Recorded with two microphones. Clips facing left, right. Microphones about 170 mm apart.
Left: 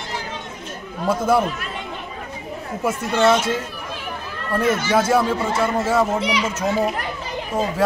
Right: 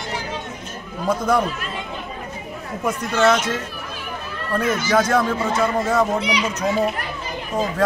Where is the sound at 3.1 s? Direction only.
20° left (ahead or behind).